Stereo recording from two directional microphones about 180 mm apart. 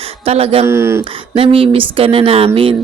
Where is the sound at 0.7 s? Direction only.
15° right (ahead or behind).